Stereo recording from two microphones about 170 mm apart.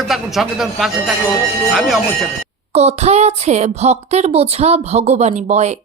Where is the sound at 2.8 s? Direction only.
40° right (ahead or behind).